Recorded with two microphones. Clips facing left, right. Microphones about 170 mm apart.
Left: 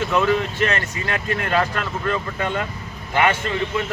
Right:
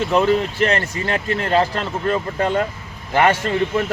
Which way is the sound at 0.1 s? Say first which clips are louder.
Right 4 dB; 35° right (ahead or behind).